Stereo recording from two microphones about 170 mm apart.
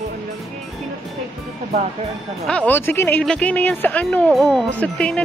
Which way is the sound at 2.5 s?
10° left (ahead or behind).